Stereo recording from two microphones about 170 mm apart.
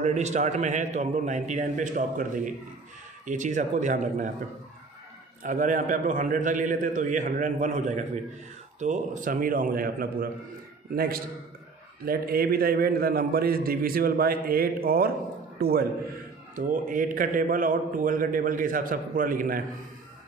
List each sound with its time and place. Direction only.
0.0 s a man's voice: 40° right (ahead or behind)
5.4 s a man's voice: 50° right (ahead or behind)
12.0 s a man's voice: 60° right (ahead or behind)
16.5 s a man's voice: 55° right (ahead or behind)